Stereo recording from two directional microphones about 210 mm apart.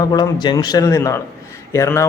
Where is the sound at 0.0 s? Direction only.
20° left (ahead or behind).